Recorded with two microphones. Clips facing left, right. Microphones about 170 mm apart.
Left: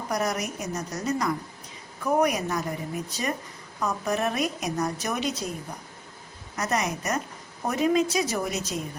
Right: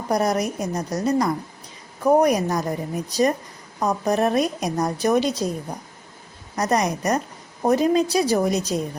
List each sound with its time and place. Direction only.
0.1 s speech: 35° right (ahead or behind)
6.6 s speech: 35° right (ahead or behind)